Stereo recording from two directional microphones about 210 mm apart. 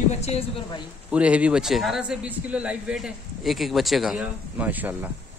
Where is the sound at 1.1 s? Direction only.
5° right (ahead or behind).